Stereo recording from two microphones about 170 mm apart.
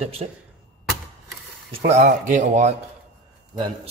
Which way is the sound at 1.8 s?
45° right (ahead or behind).